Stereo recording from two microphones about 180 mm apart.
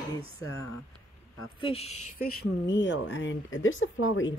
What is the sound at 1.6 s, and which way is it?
Speech, 30° left (ahead or behind).